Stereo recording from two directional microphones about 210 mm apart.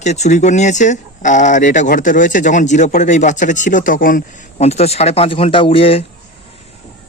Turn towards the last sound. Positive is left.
turn(degrees=25)  # may be behind; listen again after turning